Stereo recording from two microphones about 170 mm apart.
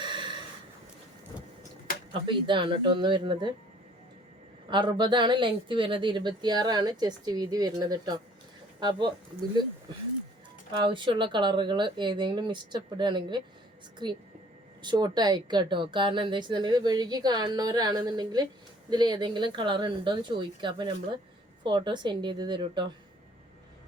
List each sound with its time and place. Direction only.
0.0 s snort: 30° right (ahead or behind)
2.2 s speech: 30° right (ahead or behind)
4.7 s speech: 25° right (ahead or behind)
10.8 s speech: 30° right (ahead or behind)